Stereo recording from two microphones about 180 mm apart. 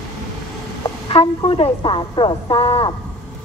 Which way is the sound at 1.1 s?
30° left (ahead or behind).